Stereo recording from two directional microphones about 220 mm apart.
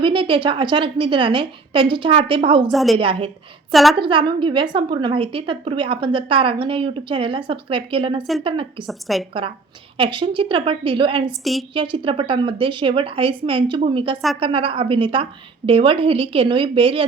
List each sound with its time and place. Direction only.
0.0 s a woman's voice: 20° right (ahead or behind)
2.6 s a woman's voice: centre (ahead or behind)
3.0 s a woman's voice: 25° right (ahead or behind)
3.7 s a woman's voice: centre (ahead or behind)
3.9 s a woman's voice: 20° right (ahead or behind)
8.9 s a woman's voice: centre (ahead or behind)
10.0 s a woman's voice: 20° right (ahead or behind)
11.3 s a woman's voice: centre (ahead or behind)
11.7 s a woman's voice: 20° right (ahead or behind)